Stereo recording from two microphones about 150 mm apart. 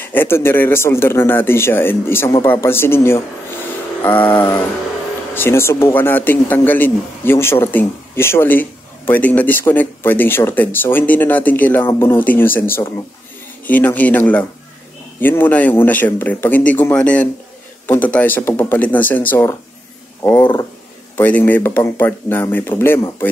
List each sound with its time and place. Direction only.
0.0 s a man's voice: 15° left (ahead or behind)
4.0 s a sound: 10° left (ahead or behind)
5.3 s a man's voice: 15° left (ahead or behind)
21.2 s a man's voice: 15° left (ahead or behind)